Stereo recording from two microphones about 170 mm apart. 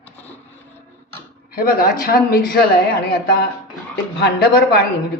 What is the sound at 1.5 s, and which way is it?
A man's voice, 60° left (ahead or behind).